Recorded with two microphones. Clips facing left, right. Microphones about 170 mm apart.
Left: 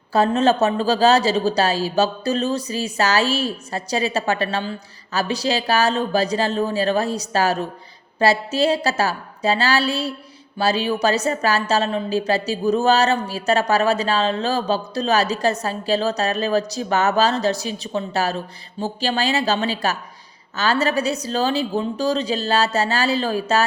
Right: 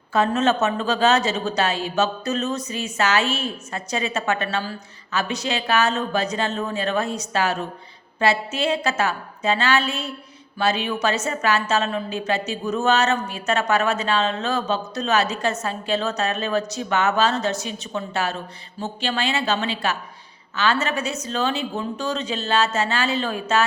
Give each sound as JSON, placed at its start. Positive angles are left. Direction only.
{"t": 0.1, "sound": "a woman's voice", "side_deg": 35}